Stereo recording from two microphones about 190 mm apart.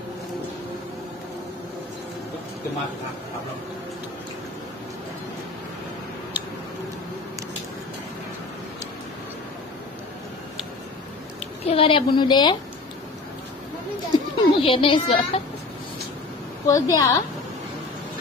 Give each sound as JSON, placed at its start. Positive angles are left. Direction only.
{"t": 11.3, "sound": "a sound", "side_deg": 30}
{"t": 14.1, "sound": "speech", "side_deg": 30}
{"t": 16.6, "sound": "a woman's voice", "side_deg": 15}